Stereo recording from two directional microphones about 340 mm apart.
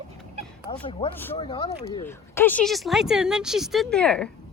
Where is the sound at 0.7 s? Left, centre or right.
Centre.